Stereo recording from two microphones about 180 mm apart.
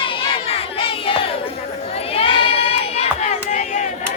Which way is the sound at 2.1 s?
30° left (ahead or behind).